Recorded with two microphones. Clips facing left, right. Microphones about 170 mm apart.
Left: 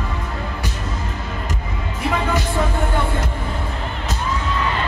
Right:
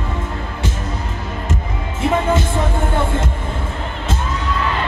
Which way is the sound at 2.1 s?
25° right (ahead or behind).